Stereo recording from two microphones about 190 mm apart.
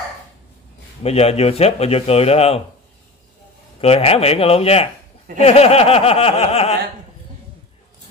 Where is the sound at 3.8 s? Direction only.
30° left (ahead or behind).